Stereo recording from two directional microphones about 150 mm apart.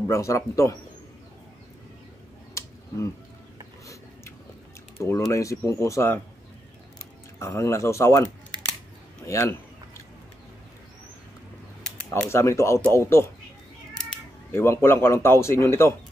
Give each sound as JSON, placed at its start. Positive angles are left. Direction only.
{"t": 0.0, "sound": "speech", "side_deg": 20}
{"t": 3.8, "sound": "a sound", "side_deg": 20}
{"t": 5.0, "sound": "speech", "side_deg": 20}
{"t": 7.3, "sound": "speech", "side_deg": 20}
{"t": 9.2, "sound": "a sound", "side_deg": 20}
{"t": 12.3, "sound": "speech", "side_deg": 20}
{"t": 14.5, "sound": "speech", "side_deg": 15}